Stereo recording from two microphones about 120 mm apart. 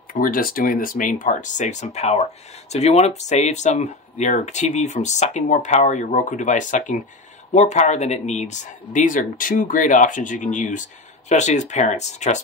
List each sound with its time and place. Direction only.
0.9 s speech: 90° left
7.5 s speech: 75° left (ahead or behind)